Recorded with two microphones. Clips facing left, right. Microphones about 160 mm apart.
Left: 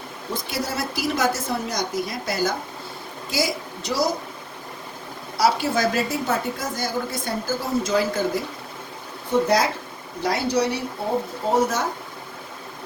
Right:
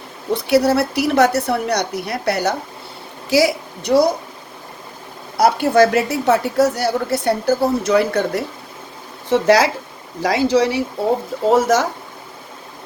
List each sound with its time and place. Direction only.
0.3 s a woman's voice: 70° right (ahead or behind)
5.4 s a woman's voice: 55° right (ahead or behind)
9.3 s speech: 85° right